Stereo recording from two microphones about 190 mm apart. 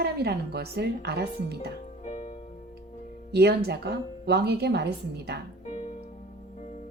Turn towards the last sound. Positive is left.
turn(degrees=35)  # may be behind; listen again after turning